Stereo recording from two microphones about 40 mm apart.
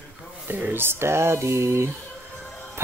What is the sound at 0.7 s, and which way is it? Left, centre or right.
Music, right.